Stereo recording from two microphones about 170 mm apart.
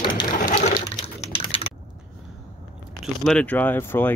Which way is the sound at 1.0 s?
35° left (ahead or behind).